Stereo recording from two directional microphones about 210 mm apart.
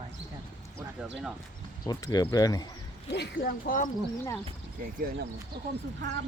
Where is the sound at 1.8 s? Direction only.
20° left (ahead or behind).